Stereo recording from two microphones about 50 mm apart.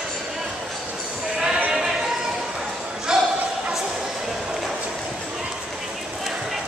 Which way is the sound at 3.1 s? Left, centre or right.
Centre.